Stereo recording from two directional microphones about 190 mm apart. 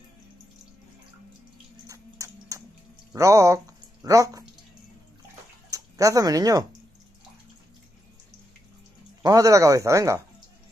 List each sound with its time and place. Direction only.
1.9 s chewing: 15° right (ahead or behind)
3.1 s speech: 15° right (ahead or behind)
5.7 s speech: 15° right (ahead or behind)
9.2 s speech: 20° right (ahead or behind)